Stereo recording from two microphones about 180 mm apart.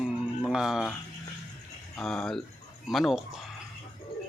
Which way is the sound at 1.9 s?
5° left (ahead or behind).